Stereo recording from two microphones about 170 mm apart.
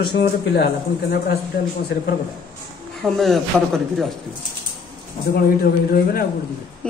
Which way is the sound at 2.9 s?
Centre (ahead or behind).